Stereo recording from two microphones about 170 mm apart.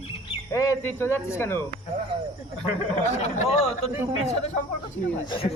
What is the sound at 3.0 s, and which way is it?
Speech, 45° left (ahead or behind).